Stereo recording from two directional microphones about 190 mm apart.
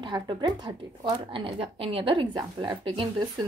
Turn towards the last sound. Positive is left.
turn(degrees=-25)  # may be behind; listen again after turning